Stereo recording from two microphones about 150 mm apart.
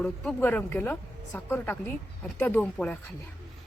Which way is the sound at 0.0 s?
5° left (ahead or behind).